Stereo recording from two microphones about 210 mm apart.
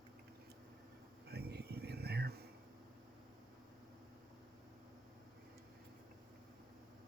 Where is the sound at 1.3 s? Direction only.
50° right (ahead or behind).